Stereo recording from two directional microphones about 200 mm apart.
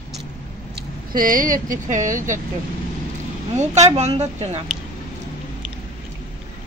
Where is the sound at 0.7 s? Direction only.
45° right (ahead or behind).